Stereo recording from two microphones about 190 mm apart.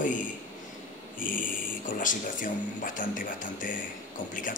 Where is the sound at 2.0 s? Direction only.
45° left (ahead or behind).